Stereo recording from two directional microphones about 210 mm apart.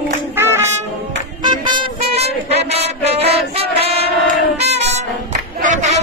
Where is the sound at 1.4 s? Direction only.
20° right (ahead or behind).